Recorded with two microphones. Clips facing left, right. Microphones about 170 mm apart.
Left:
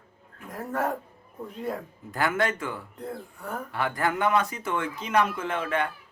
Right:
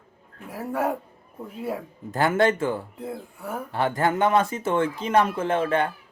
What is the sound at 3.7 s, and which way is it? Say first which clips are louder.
Speech: right 5 dB; 30° right (ahead or behind).